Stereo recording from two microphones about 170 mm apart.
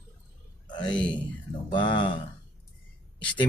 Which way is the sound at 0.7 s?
25° left (ahead or behind).